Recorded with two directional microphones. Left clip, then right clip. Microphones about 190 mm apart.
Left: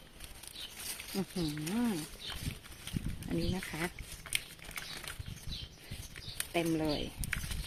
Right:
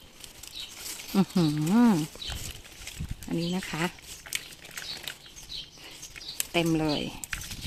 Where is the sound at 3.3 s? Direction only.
15° right (ahead or behind).